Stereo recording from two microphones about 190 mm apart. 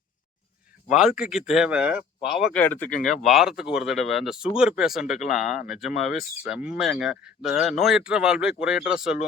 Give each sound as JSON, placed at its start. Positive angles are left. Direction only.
{"t": 0.9, "sound": "speech", "side_deg": -5}
{"t": 2.5, "sound": "speech", "side_deg": 10}
{"t": 3.2, "sound": "speech", "side_deg": 0}
{"t": 5.4, "sound": "speech", "side_deg": 40}
{"t": 5.6, "sound": "speech", "side_deg": -5}